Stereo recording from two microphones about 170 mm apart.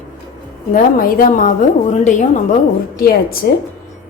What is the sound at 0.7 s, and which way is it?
A woman's voice, 55° left (ahead or behind).